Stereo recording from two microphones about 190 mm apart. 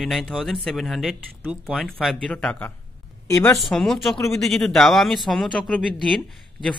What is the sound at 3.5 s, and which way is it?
Speech, centre (ahead or behind).